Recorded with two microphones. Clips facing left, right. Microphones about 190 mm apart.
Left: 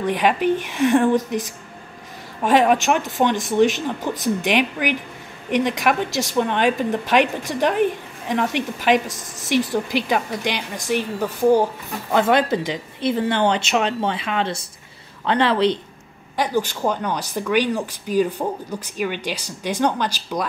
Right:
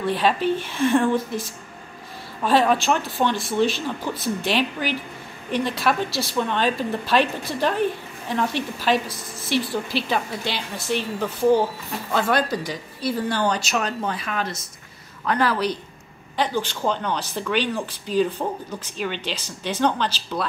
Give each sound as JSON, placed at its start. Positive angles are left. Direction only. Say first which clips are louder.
{"t": 0.0, "sound": "speech", "louder": "left 2 dB", "side_deg": 15}
{"t": 2.4, "sound": "speech", "louder": "left 3 dB", "side_deg": 15}
{"t": 9.0, "sound": "a woman's voice", "louder": "left 1 dB", "side_deg": 45}
{"t": 9.5, "sound": "speech", "louder": "left 4 dB", "side_deg": 15}
{"t": 16.3, "sound": "speech", "louder": "left 3 dB", "side_deg": 10}